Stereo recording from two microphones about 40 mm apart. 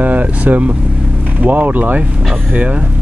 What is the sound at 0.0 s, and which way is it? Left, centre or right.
Vehicle, right.